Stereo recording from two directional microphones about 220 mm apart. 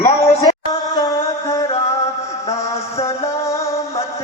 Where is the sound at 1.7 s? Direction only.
30° left (ahead or behind).